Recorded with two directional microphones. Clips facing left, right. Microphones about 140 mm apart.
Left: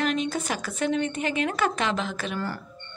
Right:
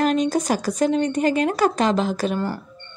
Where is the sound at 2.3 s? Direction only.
20° right (ahead or behind).